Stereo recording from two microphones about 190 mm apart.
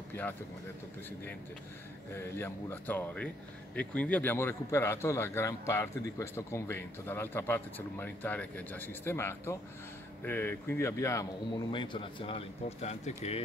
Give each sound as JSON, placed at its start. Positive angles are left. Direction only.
{"t": 0.1, "sound": "speech", "side_deg": 10}
{"t": 2.1, "sound": "a man's voice", "side_deg": 15}